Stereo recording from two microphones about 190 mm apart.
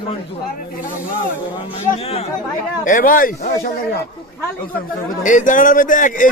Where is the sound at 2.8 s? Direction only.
45° left (ahead or behind).